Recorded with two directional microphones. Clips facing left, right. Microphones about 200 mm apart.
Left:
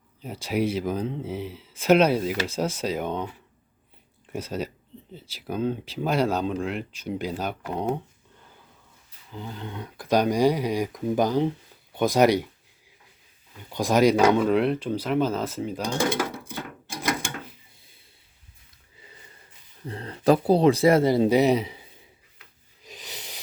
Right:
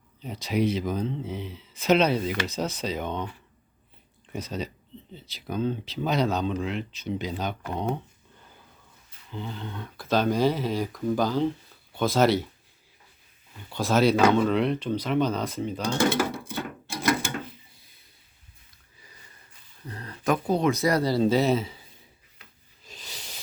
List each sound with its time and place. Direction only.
0.2 s speech: 10° left (ahead or behind)
9.3 s speech: 10° left (ahead or behind)
13.7 s speech: 15° left (ahead or behind)
16.4 s a sound: 15° left (ahead or behind)
19.9 s speech: 25° left (ahead or behind)
22.8 s owl: 15° left (ahead or behind)